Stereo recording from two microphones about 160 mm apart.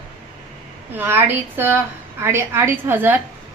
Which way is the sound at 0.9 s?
15° right (ahead or behind).